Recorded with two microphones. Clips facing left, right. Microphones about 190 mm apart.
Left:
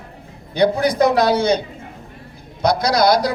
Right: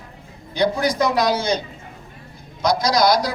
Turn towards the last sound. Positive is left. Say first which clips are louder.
# left 2 dB
turn(degrees=60)  # may be behind; listen again after turning